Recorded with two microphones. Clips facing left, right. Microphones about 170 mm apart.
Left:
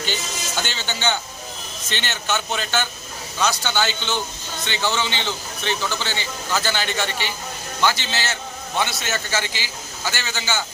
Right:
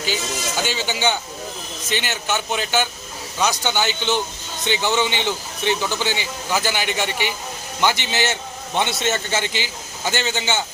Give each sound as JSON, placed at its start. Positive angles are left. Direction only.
{"t": 0.0, "sound": "a man's voice", "side_deg": -5}